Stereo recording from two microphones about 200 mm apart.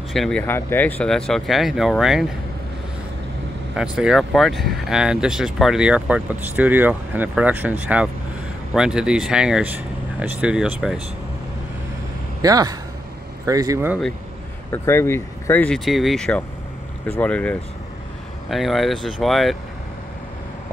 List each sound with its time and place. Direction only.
0.1 s speech: 5° left (ahead or behind)
3.7 s speech: 5° right (ahead or behind)
12.4 s speech: 20° right (ahead or behind)
14.7 s speech: 10° left (ahead or behind)